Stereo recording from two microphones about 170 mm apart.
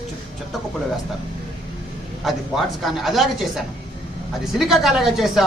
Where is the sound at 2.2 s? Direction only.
Centre (ahead or behind).